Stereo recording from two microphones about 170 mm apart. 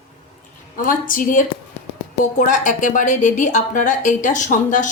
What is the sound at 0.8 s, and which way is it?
A woman's voice, 55° left (ahead or behind).